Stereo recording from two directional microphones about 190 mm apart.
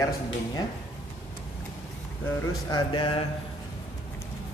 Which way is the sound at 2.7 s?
25° left (ahead or behind).